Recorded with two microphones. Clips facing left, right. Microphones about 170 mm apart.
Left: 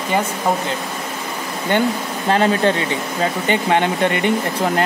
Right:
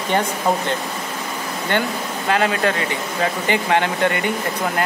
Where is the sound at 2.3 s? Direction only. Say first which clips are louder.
Left 3 dB; 30° left (ahead or behind).